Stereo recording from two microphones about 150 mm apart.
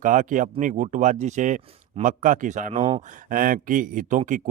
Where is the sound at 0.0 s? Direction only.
60° right (ahead or behind).